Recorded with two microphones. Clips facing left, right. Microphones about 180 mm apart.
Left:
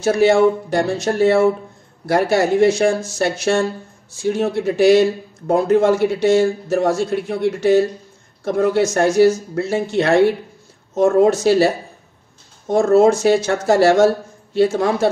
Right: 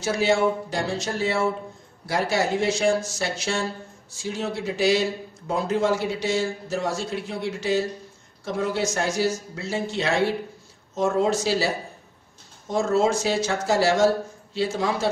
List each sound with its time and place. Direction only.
0.0 s speech: 55° left (ahead or behind)